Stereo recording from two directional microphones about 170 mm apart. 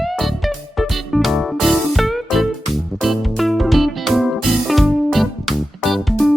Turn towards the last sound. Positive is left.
turn(degrees=0)  # may be behind; listen again after turning